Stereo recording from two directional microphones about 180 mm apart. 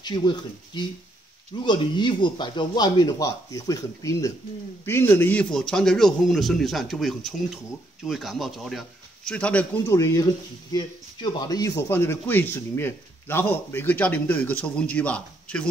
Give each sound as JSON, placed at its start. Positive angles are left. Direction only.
{"t": 0.0, "sound": "a man's voice", "side_deg": 25}